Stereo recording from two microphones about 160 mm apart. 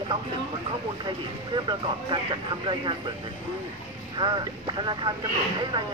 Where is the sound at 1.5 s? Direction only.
30° right (ahead or behind).